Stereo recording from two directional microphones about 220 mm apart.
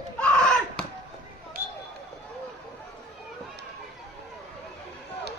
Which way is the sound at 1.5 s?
40° right (ahead or behind).